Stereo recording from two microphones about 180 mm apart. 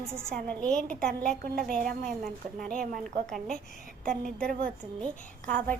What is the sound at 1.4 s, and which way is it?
Speech, 55° right (ahead or behind).